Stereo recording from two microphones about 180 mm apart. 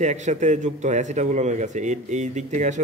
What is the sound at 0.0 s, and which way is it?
A man's voice, 40° right (ahead or behind).